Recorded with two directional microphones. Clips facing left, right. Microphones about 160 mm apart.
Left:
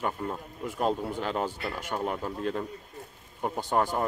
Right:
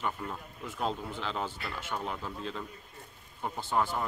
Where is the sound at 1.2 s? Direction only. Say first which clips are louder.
Left 3 dB; 45° left (ahead or behind).